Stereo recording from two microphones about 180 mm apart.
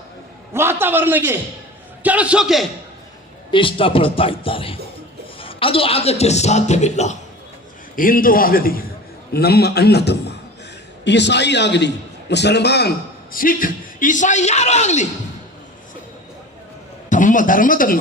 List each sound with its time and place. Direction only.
0.5 s a man's voice: 15° right (ahead or behind)
3.5 s a man's voice: 30° left (ahead or behind)
7.9 s a man's voice: 50° left (ahead or behind)
13.3 s speech: 50° left (ahead or behind)
17.1 s speech: 45° left (ahead or behind)